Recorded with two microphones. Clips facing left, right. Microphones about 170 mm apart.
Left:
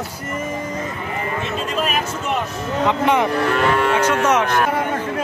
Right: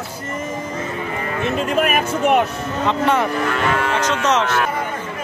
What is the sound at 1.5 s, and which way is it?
Speech, 60° right (ahead or behind).